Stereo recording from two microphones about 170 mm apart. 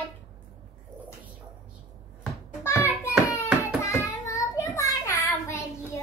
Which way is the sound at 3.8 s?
15° left (ahead or behind).